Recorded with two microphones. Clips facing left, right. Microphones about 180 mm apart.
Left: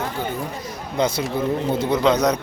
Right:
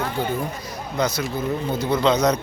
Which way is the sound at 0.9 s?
30° left (ahead or behind).